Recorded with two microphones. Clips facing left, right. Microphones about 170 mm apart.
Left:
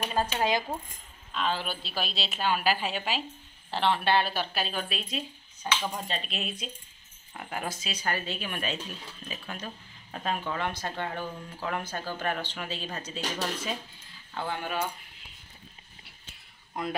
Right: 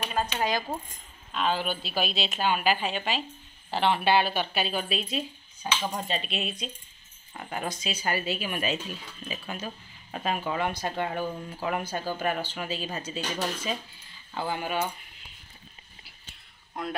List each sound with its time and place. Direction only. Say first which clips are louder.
0.4 s coin: left 1 dB; 25° left (ahead or behind)
1.3 s speech: right 3 dB; centre (ahead or behind)
5.9 s speech: right 3 dB; centre (ahead or behind)
14.3 s speech: right 2 dB; 5° right (ahead or behind)
16.8 s speech: left 1 dB; centre (ahead or behind)